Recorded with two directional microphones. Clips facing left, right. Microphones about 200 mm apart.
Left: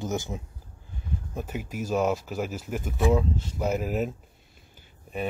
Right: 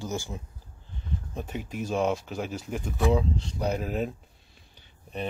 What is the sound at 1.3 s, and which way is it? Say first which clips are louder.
Speech: left 1 dB; 5° left (ahead or behind).